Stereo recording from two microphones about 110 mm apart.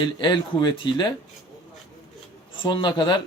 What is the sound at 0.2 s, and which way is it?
Speech, 45° left (ahead or behind).